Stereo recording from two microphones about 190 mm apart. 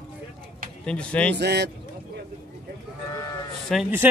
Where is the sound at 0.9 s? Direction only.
5° left (ahead or behind).